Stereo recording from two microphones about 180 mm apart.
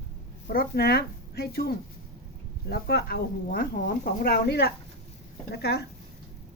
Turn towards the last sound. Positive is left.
turn(degrees=65)  # may be behind; listen again after turning